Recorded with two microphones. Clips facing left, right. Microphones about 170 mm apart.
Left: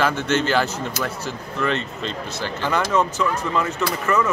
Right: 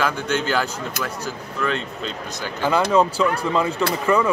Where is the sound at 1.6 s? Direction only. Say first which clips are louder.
Left 1 dB; centre (ahead or behind).